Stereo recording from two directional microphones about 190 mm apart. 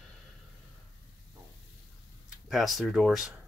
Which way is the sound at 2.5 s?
Centre (ahead or behind).